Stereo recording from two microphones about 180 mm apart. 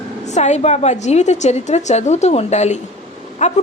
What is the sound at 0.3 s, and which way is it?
A woman's voice, 40° left (ahead or behind).